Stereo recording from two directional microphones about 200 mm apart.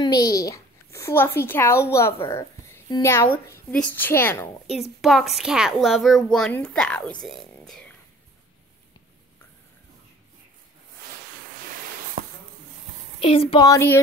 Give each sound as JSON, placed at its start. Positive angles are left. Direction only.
{"t": 0.0, "sound": "a woman's voice", "side_deg": 20}
{"t": 5.0, "sound": "a woman's voice", "side_deg": 0}
{"t": 13.3, "sound": "speech", "side_deg": 25}